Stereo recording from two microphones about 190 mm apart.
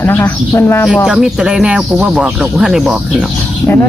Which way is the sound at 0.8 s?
Centre (ahead or behind).